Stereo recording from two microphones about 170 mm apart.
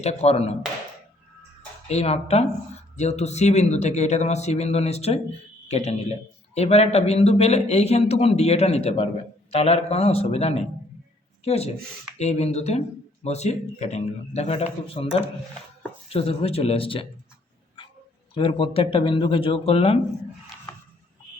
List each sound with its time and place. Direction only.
0.0 s a man's voice: 40° left (ahead or behind)
1.9 s a man's voice: 40° left (ahead or behind)
17.8 s a sound: 30° left (ahead or behind)
18.3 s a man's voice: 30° left (ahead or behind)